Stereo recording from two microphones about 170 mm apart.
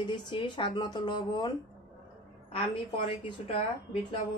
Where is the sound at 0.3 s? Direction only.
30° left (ahead or behind).